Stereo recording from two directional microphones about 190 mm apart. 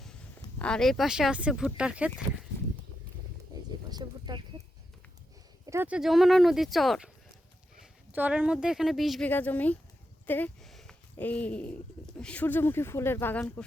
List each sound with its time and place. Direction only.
0.6 s speech: 5° left (ahead or behind)
3.8 s a sound: 20° right (ahead or behind)
5.6 s speech: 10° right (ahead or behind); by 13.7 s 5° left (ahead or behind)